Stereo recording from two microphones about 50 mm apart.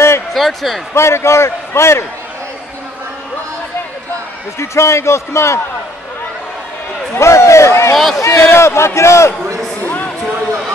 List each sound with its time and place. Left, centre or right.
0.3 s speech: centre
0.9 s a man's voice: left
4.6 s a man's voice: left
7.2 s a man's voice: left
7.9 s a man's voice: centre
8.3 s a man's voice: left
9.8 s a sound: left